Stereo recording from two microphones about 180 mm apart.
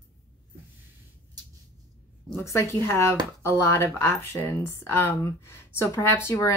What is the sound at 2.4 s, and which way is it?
Speech, 15° left (ahead or behind).